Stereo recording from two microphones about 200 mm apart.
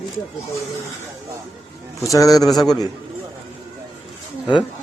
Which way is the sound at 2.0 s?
15° left (ahead or behind).